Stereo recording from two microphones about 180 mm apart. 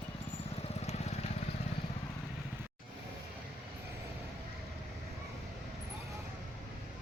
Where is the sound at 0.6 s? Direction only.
35° left (ahead or behind).